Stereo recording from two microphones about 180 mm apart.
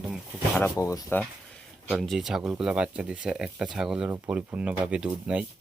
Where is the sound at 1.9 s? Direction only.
Centre (ahead or behind).